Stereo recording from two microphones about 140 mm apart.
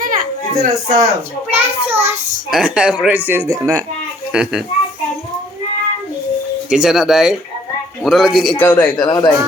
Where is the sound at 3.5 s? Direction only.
25° right (ahead or behind).